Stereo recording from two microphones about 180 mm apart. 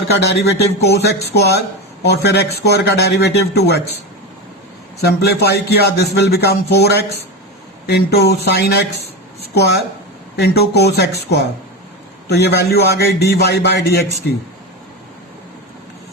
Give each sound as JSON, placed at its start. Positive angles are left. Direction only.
{"t": 0.2, "sound": "a man's voice", "side_deg": 65}
{"t": 4.9, "sound": "a man's voice", "side_deg": 60}